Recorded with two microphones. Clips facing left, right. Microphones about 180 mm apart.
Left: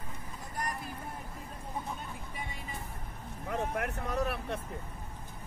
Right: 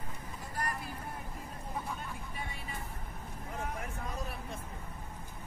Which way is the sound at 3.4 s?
70° left (ahead or behind).